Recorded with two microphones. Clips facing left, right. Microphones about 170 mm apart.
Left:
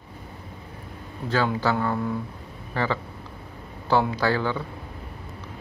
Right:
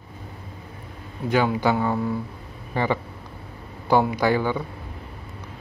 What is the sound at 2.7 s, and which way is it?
Speech, 15° right (ahead or behind).